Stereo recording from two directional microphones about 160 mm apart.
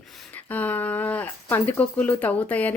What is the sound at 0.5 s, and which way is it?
A woman's voice, 10° left (ahead or behind).